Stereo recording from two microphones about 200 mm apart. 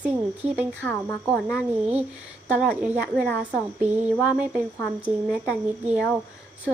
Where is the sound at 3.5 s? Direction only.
5° right (ahead or behind).